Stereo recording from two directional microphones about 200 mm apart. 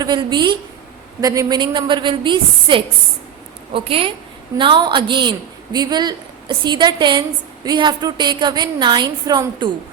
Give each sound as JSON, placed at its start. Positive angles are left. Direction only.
{"t": 0.0, "sound": "a woman's voice", "side_deg": -20}